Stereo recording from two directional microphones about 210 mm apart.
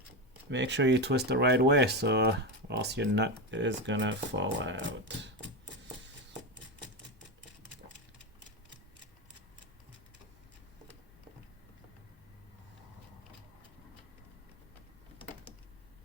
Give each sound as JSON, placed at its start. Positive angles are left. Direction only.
{"t": 0.5, "sound": "speech", "side_deg": -55}